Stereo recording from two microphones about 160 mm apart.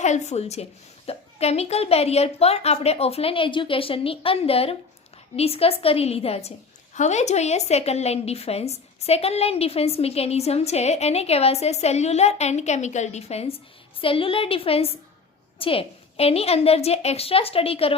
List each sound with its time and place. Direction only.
0.0 s a woman's voice: 45° left (ahead or behind)